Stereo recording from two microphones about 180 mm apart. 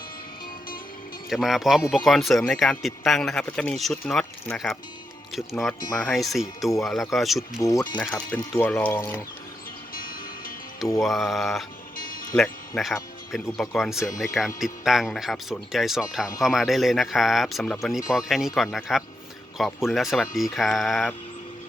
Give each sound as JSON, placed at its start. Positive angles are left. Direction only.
{"t": 1.3, "sound": "speech", "side_deg": 0}
{"t": 7.6, "sound": "speech", "side_deg": 15}
{"t": 9.9, "sound": "music", "side_deg": 50}
{"t": 11.0, "sound": "speech", "side_deg": 0}
{"t": 11.9, "sound": "music", "side_deg": 50}
{"t": 12.4, "sound": "speech", "side_deg": 5}